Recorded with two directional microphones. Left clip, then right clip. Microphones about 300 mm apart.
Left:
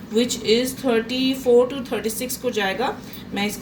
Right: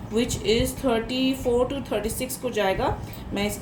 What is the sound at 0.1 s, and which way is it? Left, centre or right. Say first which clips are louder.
A woman's voice: left 4 dB; right.